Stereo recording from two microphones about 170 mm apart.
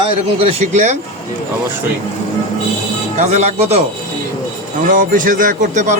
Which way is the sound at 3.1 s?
45° right (ahead or behind).